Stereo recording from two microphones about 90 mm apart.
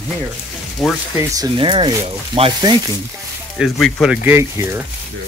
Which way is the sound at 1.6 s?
75° right (ahead or behind).